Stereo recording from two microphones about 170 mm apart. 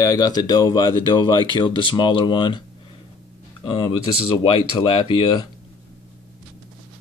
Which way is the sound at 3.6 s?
30° left (ahead or behind).